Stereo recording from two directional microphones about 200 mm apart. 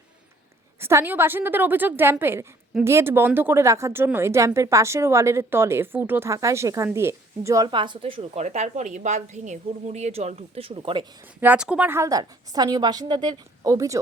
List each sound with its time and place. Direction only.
0.8 s a woman's voice: 15° right (ahead or behind)
11.3 s a woman's voice: 5° right (ahead or behind)